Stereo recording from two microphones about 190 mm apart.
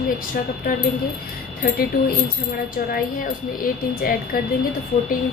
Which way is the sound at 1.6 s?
55° left (ahead or behind).